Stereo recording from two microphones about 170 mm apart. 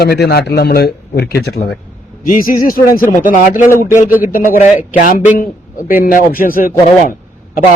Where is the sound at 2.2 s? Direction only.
55° left (ahead or behind).